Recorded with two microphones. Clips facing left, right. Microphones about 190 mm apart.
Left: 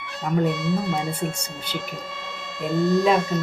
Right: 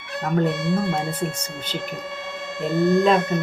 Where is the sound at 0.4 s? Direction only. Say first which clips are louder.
Right 1 dB; 55° right (ahead or behind).